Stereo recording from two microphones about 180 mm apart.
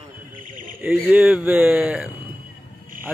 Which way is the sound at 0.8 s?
10° right (ahead or behind).